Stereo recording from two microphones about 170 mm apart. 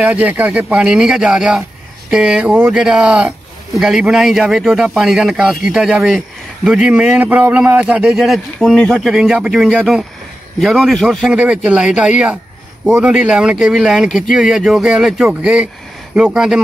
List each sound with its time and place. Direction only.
0.0 s a man's voice: 10° right (ahead or behind)